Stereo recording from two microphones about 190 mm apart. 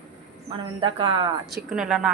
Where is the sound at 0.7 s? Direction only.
30° right (ahead or behind).